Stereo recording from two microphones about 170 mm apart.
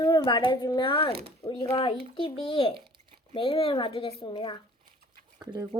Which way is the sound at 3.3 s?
30° left (ahead or behind).